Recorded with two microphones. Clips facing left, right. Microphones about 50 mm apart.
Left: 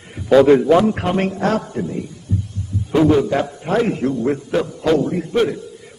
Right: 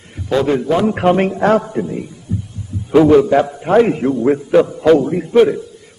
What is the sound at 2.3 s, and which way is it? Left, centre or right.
Heart sounds, centre.